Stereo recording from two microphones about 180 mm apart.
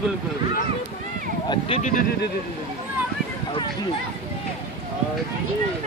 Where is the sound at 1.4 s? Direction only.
30° left (ahead or behind).